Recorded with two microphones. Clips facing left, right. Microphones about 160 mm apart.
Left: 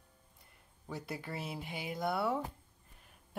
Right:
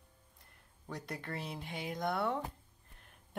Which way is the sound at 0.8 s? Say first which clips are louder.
Left 1 dB; 5° left (ahead or behind).